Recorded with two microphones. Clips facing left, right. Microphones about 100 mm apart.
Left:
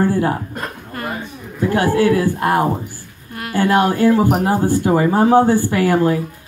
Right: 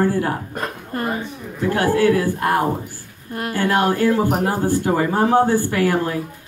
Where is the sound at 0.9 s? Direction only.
35° right (ahead or behind).